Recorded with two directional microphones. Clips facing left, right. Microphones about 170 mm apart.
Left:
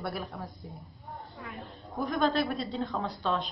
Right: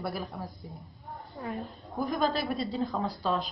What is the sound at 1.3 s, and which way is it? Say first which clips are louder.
Speech: right 10 dB; 35° right (ahead or behind).